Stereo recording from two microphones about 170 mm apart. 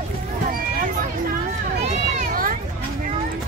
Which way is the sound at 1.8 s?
45° right (ahead or behind).